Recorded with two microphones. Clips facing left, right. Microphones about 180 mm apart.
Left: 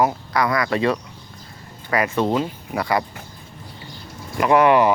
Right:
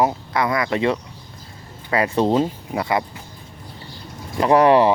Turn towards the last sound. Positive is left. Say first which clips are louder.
# right 1 dB
turn(degrees=-30)  # may be behind; listen again after turning